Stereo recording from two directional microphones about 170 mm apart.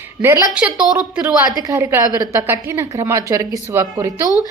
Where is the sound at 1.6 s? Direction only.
15° right (ahead or behind).